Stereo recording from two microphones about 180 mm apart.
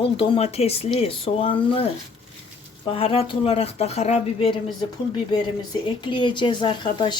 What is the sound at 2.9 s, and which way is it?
Speech, 30° left (ahead or behind).